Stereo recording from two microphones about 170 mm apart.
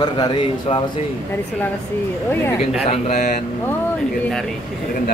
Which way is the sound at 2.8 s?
45° left (ahead or behind).